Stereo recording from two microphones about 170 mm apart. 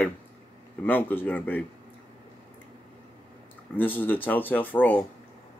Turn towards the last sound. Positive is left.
turn(degrees=10)  # may be behind; listen again after turning